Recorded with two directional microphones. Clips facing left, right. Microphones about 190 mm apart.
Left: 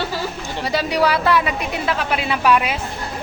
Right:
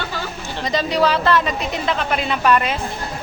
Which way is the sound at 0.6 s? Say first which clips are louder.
Even; 10° left (ahead or behind).